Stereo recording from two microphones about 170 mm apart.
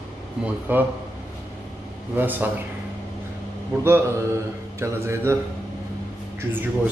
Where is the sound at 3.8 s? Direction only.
15° right (ahead or behind).